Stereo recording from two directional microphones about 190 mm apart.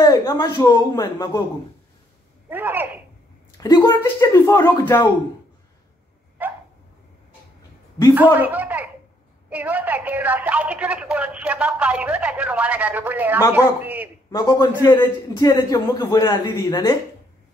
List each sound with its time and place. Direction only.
0.0 s a man's voice: 20° left (ahead or behind)
2.5 s speech: 10° right (ahead or behind)
3.5 s a man's voice: 20° left (ahead or behind)
6.4 s dog: 10° right (ahead or behind)
8.4 s speech: 10° right (ahead or behind)
14.3 s a man's voice: 20° left (ahead or behind)